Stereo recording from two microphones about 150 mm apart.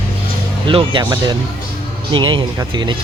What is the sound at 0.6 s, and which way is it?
Speech, 35° right (ahead or behind).